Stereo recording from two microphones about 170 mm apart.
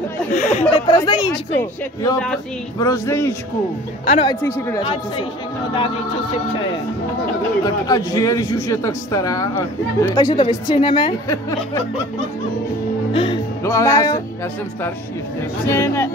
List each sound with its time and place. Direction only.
0.3 s speech: 45° left (ahead or behind)
0.8 s a man's voice: 25° left (ahead or behind)
2.1 s speech: 5° left (ahead or behind)
2.8 s a man's voice: 15° left (ahead or behind)
4.0 s speech: 40° left (ahead or behind)
4.4 s a man's voice: 15° left (ahead or behind)
7.6 s a man's voice: 20° left (ahead or behind)
13.1 s speech: 35° left (ahead or behind)
13.7 s a man's voice: 20° left (ahead or behind)
15.7 s a man's voice: 15° left (ahead or behind)